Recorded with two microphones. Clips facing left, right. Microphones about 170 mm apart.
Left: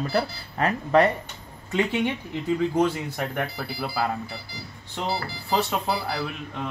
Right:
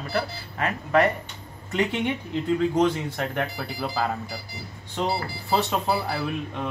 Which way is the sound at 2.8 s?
10° left (ahead or behind).